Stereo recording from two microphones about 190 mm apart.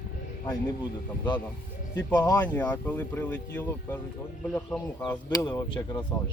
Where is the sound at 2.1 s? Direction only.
20° left (ahead or behind).